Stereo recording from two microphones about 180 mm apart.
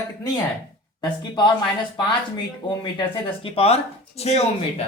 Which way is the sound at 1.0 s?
25° left (ahead or behind).